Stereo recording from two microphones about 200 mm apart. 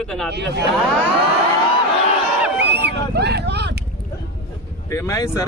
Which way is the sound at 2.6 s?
60° right (ahead or behind).